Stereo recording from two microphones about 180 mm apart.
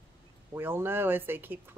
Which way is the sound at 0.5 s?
10° right (ahead or behind).